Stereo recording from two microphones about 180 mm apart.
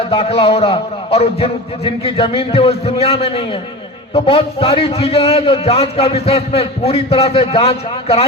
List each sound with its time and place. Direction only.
0.0 s a man's voice: 30° left (ahead or behind)